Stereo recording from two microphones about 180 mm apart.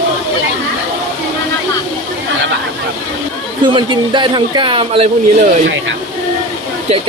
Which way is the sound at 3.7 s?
25° right (ahead or behind).